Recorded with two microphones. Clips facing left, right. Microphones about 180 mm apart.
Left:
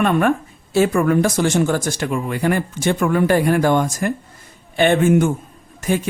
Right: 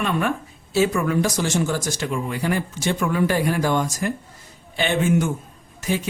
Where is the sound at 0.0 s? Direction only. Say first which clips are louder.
Left 6 dB; 55° left (ahead or behind).